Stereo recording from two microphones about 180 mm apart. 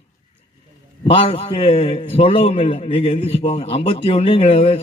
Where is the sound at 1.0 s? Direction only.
30° left (ahead or behind).